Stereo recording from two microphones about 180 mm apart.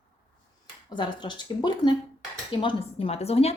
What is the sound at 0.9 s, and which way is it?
A woman's voice, 25° left (ahead or behind).